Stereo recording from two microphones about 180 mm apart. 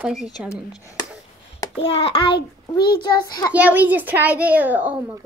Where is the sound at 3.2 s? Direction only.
20° left (ahead or behind).